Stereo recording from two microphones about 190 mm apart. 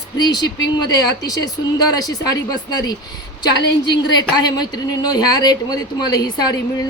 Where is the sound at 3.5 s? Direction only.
65° left (ahead or behind).